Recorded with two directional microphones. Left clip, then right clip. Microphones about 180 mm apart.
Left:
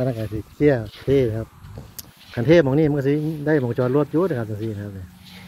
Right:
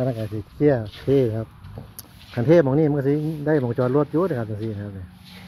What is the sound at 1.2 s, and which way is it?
Speech, 20° left (ahead or behind).